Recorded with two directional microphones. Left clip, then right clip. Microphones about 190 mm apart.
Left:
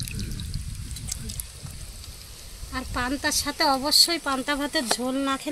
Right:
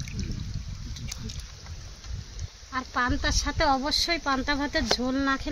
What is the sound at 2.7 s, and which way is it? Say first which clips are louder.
A woman's voice: right 2 dB; 25° right (ahead or behind).